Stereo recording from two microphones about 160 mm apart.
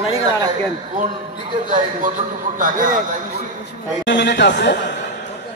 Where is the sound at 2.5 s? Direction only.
55° right (ahead or behind).